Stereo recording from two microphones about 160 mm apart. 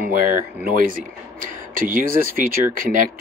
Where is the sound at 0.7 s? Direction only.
60° right (ahead or behind).